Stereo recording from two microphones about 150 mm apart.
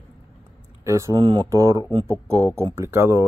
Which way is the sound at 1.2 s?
35° right (ahead or behind).